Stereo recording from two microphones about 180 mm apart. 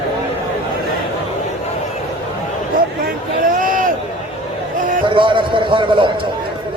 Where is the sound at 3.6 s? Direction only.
50° right (ahead or behind).